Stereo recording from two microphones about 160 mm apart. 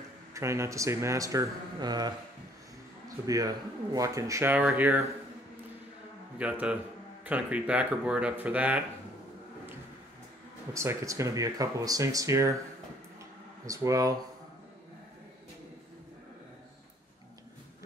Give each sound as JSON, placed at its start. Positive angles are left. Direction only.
{"t": 0.3, "sound": "speech", "side_deg": -20}
{"t": 3.3, "sound": "speech", "side_deg": -20}
{"t": 6.3, "sound": "a man's voice", "side_deg": -10}
{"t": 10.7, "sound": "speech", "side_deg": -20}
{"t": 13.7, "sound": "speech", "side_deg": -20}